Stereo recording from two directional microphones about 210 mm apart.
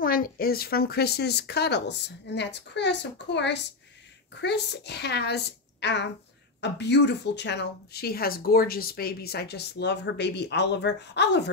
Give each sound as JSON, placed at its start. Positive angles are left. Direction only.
{"t": 0.0, "sound": "a woman's voice", "side_deg": 45}